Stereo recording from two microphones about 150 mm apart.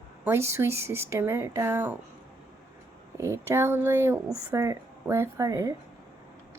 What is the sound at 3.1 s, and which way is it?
Speech, 15° right (ahead or behind).